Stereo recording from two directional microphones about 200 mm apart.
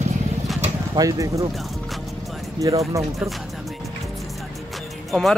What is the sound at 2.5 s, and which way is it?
Speech, 15° right (ahead or behind).